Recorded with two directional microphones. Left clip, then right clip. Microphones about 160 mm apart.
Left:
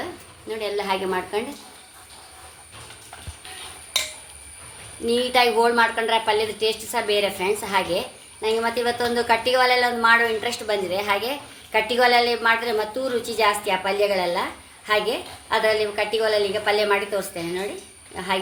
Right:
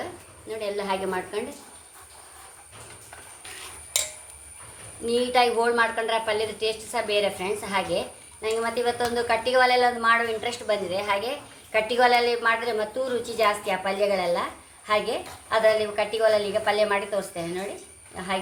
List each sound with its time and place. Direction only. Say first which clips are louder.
0.6 s a woman's voice: left 3 dB; 60° left (ahead or behind)
5.0 s a woman's voice: left 2 dB; 60° left (ahead or behind)